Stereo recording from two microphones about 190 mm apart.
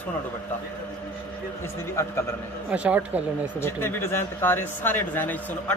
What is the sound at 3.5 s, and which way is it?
Speech, 15° left (ahead or behind).